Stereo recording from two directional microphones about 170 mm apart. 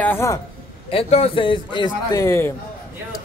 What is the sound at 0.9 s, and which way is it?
A man's voice, 35° left (ahead or behind).